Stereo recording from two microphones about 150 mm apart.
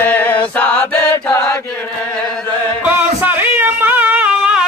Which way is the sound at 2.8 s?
10° right (ahead or behind).